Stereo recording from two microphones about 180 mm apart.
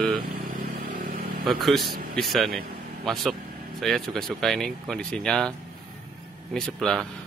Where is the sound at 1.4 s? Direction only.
Centre (ahead or behind).